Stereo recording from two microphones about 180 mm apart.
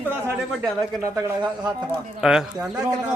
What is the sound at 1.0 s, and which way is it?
Speech, 20° right (ahead or behind).